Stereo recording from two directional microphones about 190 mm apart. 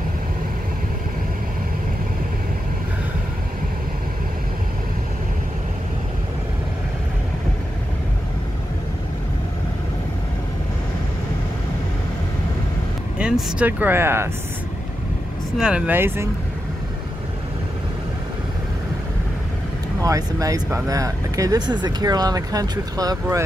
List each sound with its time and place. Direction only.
13.2 s speech: 5° right (ahead or behind)
15.5 s speech: 5° right (ahead or behind)
20.0 s speech: 20° right (ahead or behind)